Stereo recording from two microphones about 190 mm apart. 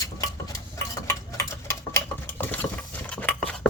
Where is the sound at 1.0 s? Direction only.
15° left (ahead or behind).